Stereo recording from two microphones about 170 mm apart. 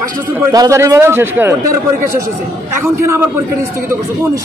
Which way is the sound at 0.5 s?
20° right (ahead or behind).